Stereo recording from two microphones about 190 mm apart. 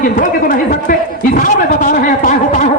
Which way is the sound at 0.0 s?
45° left (ahead or behind).